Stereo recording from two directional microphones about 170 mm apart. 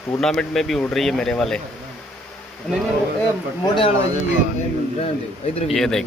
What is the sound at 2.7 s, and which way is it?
Speech, centre (ahead or behind).